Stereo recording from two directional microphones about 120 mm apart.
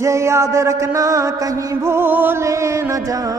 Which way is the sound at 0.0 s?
25° right (ahead or behind).